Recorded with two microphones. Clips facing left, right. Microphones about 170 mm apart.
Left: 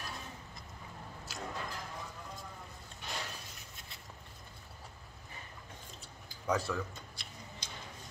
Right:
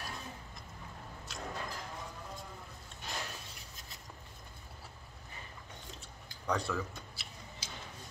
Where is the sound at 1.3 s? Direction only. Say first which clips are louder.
Left 1 dB; centre (ahead or behind).